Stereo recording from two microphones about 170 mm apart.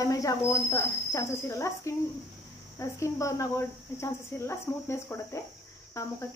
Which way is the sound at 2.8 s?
15° left (ahead or behind).